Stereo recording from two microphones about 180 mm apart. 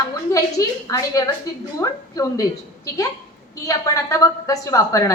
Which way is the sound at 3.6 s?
15° left (ahead or behind).